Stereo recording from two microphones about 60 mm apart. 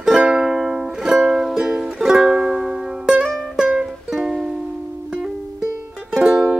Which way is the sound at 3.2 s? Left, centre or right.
Centre.